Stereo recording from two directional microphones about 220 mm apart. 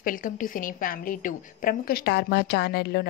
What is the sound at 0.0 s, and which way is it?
A woman's voice, 40° left (ahead or behind).